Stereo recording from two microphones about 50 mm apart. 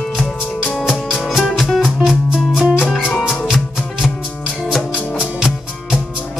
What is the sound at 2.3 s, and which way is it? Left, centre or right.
Music, centre.